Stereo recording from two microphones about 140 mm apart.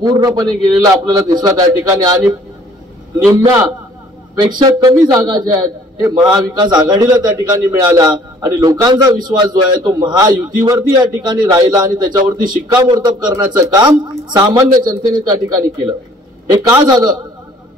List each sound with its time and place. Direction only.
0.0 s a man's voice: 30° right (ahead or behind)
4.4 s a man's voice: 30° right (ahead or behind)